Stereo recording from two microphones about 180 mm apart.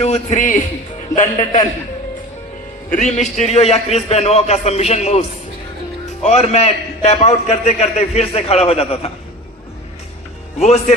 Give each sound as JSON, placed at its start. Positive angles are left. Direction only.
{"t": 0.0, "sound": "a man's voice", "side_deg": 40}
{"t": 3.0, "sound": "a man's voice", "side_deg": 40}
{"t": 6.2, "sound": "a man's voice", "side_deg": 35}
{"t": 10.6, "sound": "a man's voice", "side_deg": 40}